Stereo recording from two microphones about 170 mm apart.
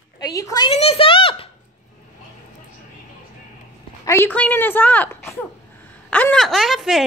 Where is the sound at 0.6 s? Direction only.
35° left (ahead or behind).